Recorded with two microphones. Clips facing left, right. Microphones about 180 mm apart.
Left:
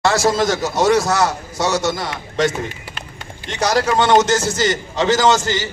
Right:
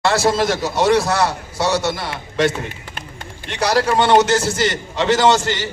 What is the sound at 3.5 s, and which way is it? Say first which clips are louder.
A man's voice: even; 30° right (ahead or behind).